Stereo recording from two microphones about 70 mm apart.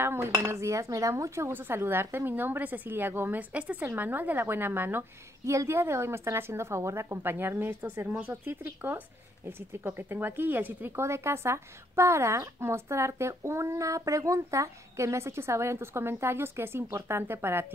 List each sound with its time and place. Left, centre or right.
0.0 s cutlery: right
1.5 s a woman's voice: right
5.4 s speech: right
11.1 s speech: right